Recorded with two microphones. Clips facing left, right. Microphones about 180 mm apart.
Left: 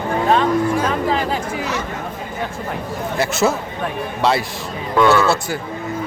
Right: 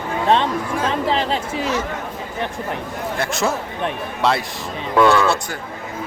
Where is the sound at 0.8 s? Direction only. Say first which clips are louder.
Left 1 dB; 25° right (ahead or behind).